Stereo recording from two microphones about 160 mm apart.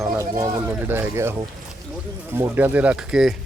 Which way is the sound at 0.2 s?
20° right (ahead or behind).